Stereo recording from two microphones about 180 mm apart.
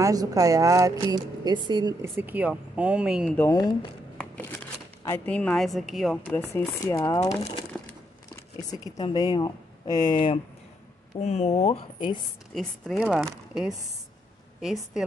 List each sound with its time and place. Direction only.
0.0 s a woman's voice: 20° right (ahead or behind); by 3.3 s 5° right (ahead or behind)
3.3 s speech: 20° left (ahead or behind)
5.0 s a woman's voice: 10° left (ahead or behind)
6.5 s speech: 15° left (ahead or behind)
7.7 s a sound: 5° left (ahead or behind)
8.5 s speech: 20° left (ahead or behind)
12.5 s a woman's voice: centre (ahead or behind)